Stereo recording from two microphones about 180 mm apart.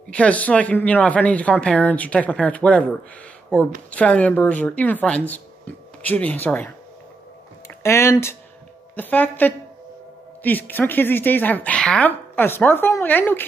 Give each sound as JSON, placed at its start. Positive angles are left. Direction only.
{"t": 0.1, "sound": "speech", "side_deg": 5}